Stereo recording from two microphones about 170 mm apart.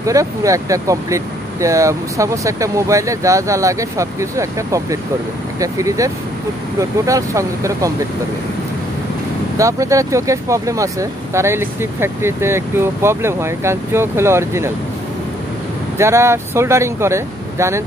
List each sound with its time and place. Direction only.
0.0 s speech: 20° right (ahead or behind)
9.6 s speech: 20° right (ahead or behind)
16.0 s speech: 15° right (ahead or behind)